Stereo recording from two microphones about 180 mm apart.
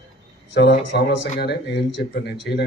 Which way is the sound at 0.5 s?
80° left.